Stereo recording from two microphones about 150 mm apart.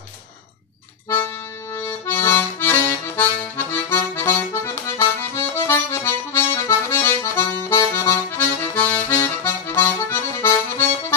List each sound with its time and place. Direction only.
1.0 s accordion: 15° left (ahead or behind)